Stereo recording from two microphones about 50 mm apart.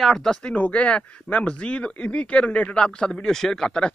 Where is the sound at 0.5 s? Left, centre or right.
Left; by 3.9 s centre.